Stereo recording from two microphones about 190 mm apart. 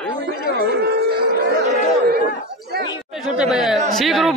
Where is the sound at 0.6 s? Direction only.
60° right (ahead or behind).